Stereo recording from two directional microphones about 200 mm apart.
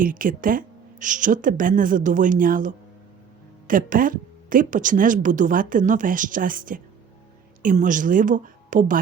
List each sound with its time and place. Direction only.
0.0 s a woman's voice: 45° right (ahead or behind)